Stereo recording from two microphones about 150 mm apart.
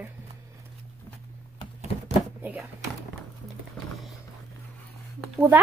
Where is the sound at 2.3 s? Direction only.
10° right (ahead or behind).